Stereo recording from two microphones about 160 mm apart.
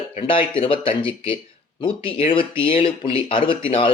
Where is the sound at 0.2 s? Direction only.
35° left (ahead or behind).